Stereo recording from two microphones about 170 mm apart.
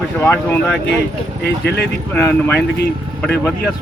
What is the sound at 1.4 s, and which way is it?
Speech, 75° left (ahead or behind).